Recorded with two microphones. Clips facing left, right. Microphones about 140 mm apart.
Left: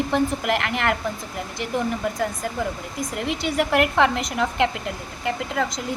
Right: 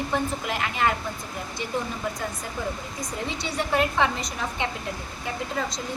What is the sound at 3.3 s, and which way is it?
Speech, 85° left.